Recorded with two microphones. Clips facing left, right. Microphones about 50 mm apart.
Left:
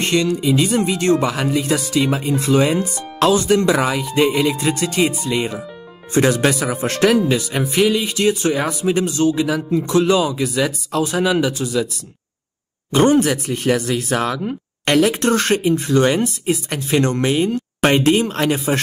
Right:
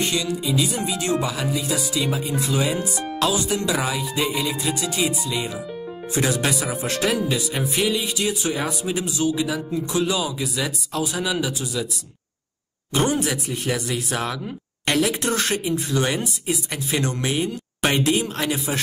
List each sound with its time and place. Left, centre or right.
0.0 s speech: left
12.9 s speech: left